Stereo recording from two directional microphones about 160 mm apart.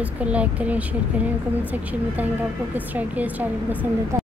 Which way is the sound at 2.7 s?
10° right (ahead or behind).